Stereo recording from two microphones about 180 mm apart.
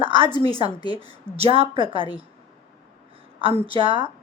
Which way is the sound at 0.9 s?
30° right (ahead or behind).